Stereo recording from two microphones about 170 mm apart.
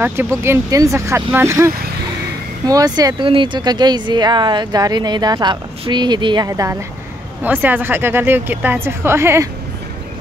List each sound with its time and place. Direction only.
0.0 s speech: 10° right (ahead or behind)